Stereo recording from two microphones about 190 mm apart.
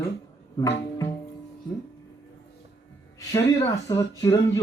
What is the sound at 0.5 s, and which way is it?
Music, 20° left (ahead or behind).